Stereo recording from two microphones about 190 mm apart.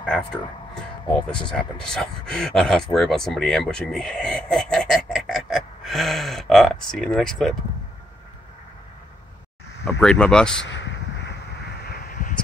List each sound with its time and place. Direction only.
0.0 s speech: 5° left (ahead or behind)
1.5 s speech: 5° left (ahead or behind)
9.8 s speech: 5° left (ahead or behind)
10.6 s a sound: 65° left (ahead or behind); by 12.4 s 50° left (ahead or behind)